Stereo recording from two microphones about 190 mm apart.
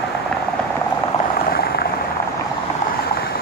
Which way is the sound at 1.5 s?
55° left (ahead or behind).